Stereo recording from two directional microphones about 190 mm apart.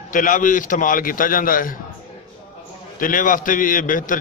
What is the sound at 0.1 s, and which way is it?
A man's voice, 45° left (ahead or behind).